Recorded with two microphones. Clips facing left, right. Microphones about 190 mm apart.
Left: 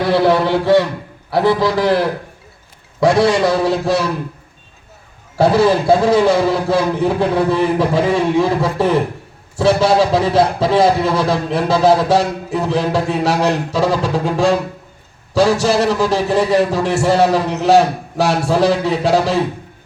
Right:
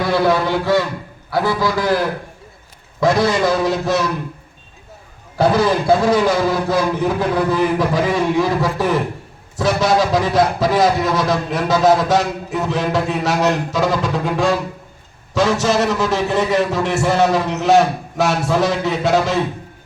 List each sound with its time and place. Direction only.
0.0 s a man's voice: 30° left (ahead or behind)
5.4 s a man's voice: 30° left (ahead or behind)